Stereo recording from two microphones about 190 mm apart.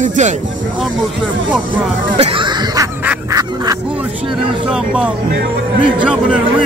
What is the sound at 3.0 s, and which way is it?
Goose, 15° right (ahead or behind).